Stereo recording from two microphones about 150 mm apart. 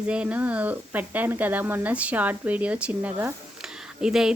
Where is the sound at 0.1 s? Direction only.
10° right (ahead or behind).